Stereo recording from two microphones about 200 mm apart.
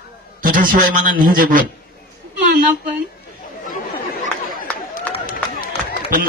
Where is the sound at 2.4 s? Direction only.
40° right (ahead or behind).